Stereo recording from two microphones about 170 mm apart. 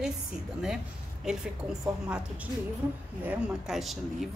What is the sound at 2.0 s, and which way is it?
A woman's voice, 5° right (ahead or behind).